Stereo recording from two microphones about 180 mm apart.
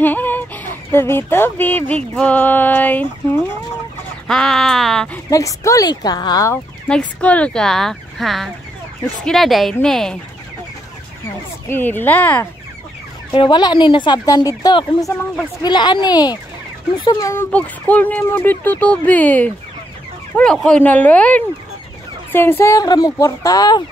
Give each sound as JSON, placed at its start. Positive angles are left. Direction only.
{"t": 0.0, "sound": "speech", "side_deg": 10}
{"t": 5.3, "sound": "speech", "side_deg": 15}
{"t": 6.9, "sound": "speech", "side_deg": 5}
{"t": 11.7, "sound": "speech", "side_deg": 10}
{"t": 13.3, "sound": "speech", "side_deg": 25}